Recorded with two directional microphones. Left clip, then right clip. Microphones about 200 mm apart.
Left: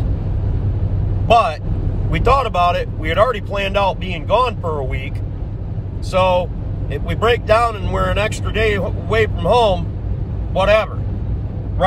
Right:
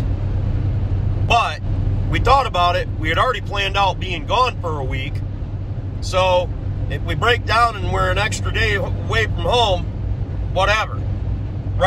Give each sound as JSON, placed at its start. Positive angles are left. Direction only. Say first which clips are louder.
{"t": 1.3, "sound": "speech", "louder": "left 4 dB", "side_deg": 20}
{"t": 6.1, "sound": "speech", "louder": "left 1 dB", "side_deg": 20}